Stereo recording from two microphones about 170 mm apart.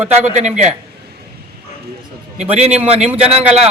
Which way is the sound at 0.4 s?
45° right (ahead or behind).